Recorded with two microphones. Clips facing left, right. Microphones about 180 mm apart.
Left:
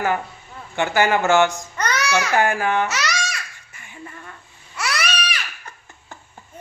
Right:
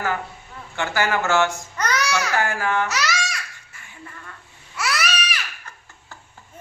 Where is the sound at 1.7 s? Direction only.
Centre (ahead or behind).